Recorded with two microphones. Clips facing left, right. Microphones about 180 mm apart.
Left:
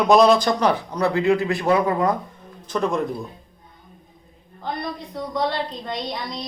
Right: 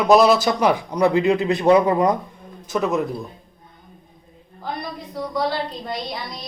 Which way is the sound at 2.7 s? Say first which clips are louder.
Right 1 dB; 5° right (ahead or behind).